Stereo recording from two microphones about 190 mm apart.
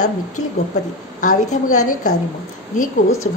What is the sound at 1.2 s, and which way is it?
Speech, 40° left (ahead or behind).